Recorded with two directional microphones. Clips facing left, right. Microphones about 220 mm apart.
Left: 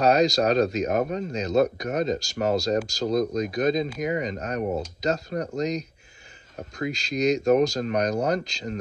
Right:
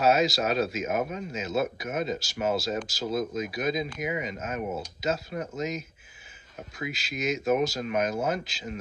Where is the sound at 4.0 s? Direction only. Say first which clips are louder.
Left 5 dB; 40° left (ahead or behind).